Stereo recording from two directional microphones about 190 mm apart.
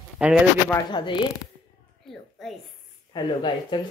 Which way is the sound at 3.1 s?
20° left (ahead or behind).